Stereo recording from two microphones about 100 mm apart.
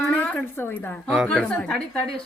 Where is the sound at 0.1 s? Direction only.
15° left (ahead or behind).